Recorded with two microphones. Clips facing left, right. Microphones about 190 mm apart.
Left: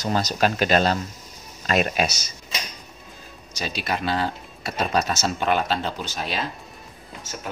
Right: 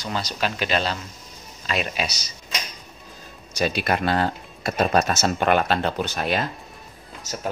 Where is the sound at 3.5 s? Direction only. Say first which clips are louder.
Right 5 dB; 55° right (ahead or behind).